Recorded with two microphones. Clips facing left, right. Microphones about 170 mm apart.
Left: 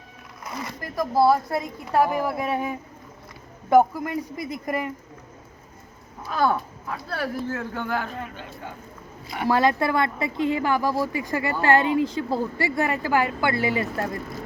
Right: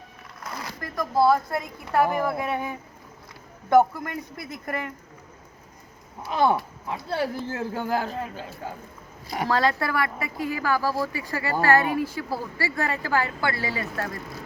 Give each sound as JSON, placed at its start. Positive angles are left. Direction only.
{"t": 0.5, "sound": "speech", "side_deg": 0}
{"t": 6.2, "sound": "a woman's voice", "side_deg": -25}
{"t": 9.5, "sound": "speech", "side_deg": 15}